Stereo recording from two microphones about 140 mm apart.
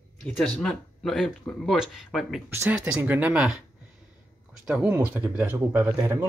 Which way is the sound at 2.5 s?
20° right (ahead or behind).